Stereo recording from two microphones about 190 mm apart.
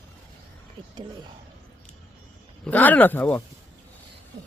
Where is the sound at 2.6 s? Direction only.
10° left (ahead or behind).